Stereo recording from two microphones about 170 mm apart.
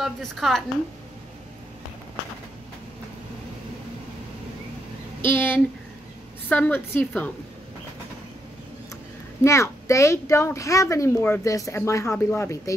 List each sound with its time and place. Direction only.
0.0 s a woman's voice: centre (ahead or behind)
5.2 s a child's voice: 10° left (ahead or behind)
9.4 s a child's voice: 15° left (ahead or behind)